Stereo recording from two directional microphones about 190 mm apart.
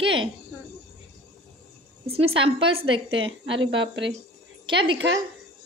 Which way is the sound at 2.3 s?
30° right (ahead or behind).